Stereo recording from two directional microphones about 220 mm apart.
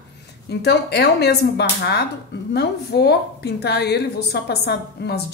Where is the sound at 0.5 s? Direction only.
45° left (ahead or behind).